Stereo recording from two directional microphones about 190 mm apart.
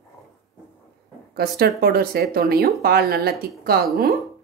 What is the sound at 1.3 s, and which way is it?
A woman's voice, 55° right (ahead or behind).